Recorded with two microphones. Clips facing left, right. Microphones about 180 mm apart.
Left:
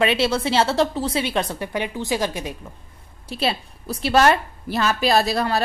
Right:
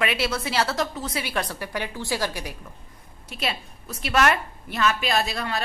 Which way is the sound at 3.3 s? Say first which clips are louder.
Left 6 dB; 30° left (ahead or behind).